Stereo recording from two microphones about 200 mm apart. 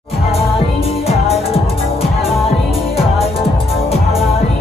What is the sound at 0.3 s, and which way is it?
Music, 30° left (ahead or behind).